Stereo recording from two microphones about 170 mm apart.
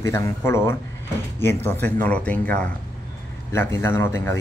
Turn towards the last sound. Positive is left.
turn(degrees=15)  # may be behind; listen again after turning